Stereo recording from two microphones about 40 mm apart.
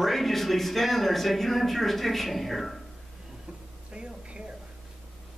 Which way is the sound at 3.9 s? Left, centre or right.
Right.